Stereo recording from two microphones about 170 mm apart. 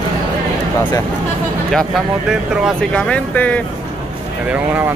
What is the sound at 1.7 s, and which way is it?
Speech, centre (ahead or behind).